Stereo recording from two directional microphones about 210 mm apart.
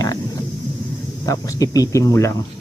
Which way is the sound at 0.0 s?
15° left (ahead or behind).